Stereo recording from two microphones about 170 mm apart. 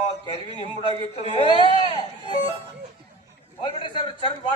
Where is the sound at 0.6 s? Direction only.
40° left (ahead or behind).